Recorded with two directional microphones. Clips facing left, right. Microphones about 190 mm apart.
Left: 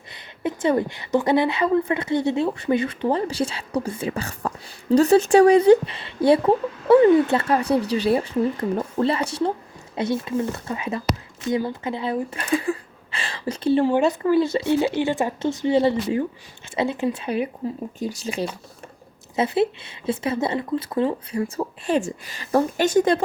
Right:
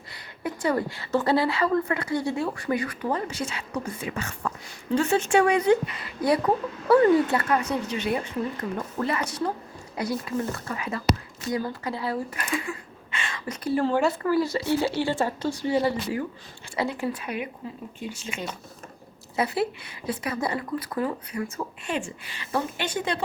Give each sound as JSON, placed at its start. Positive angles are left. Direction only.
{"t": 0.1, "sound": "a woman's voice", "side_deg": 25}
{"t": 19.4, "sound": "a woman's voice", "side_deg": 25}